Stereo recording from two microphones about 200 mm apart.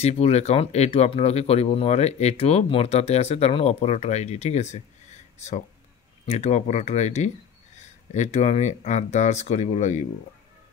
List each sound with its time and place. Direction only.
0.0 s speech: 30° left (ahead or behind)
6.2 s speech: 35° left (ahead or behind)